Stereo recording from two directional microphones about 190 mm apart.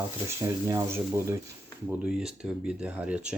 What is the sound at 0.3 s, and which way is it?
Speech, 15° right (ahead or behind).